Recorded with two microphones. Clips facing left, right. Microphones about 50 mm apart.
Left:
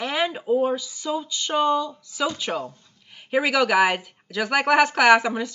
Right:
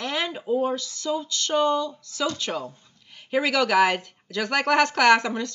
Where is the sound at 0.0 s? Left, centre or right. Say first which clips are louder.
Left 3 dB; centre.